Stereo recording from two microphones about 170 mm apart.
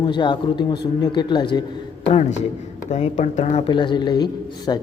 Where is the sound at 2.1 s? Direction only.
40° left (ahead or behind).